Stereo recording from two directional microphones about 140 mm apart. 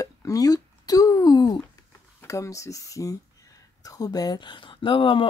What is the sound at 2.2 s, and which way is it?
Speech, 20° left (ahead or behind).